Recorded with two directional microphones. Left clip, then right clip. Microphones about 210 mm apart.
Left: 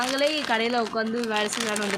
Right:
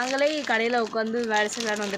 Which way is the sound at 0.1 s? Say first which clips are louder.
Even; 10° right (ahead or behind).